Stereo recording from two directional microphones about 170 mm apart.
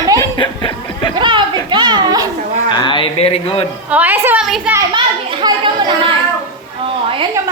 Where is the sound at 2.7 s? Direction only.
25° left (ahead or behind).